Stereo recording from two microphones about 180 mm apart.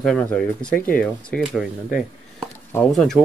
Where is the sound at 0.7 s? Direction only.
50° left (ahead or behind).